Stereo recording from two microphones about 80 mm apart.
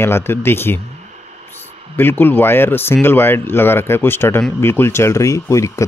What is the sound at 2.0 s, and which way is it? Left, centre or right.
Speech, left.